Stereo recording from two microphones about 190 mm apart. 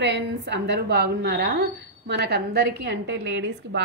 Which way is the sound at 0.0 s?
65° right (ahead or behind).